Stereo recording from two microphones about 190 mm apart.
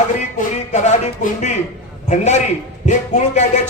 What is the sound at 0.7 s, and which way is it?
Speech, 40° left (ahead or behind).